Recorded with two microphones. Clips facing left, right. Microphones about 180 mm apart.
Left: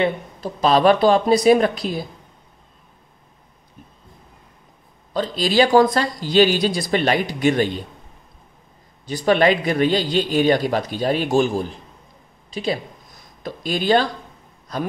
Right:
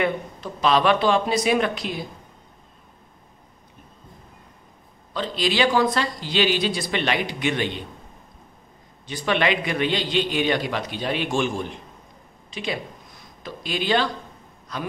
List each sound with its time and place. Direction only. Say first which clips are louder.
0.0 s a man's voice: left 3 dB; 35° left (ahead or behind)
5.1 s a man's voice: left 6 dB; 40° left (ahead or behind)
9.0 s a man's voice: left 6 dB; 40° left (ahead or behind)